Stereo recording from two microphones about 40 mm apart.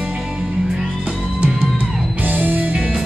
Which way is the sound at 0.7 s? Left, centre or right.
Right.